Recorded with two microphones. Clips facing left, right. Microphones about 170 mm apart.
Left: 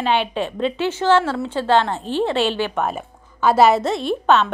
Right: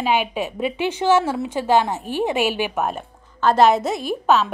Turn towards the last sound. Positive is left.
turn(degrees=-5)  # may be behind; listen again after turning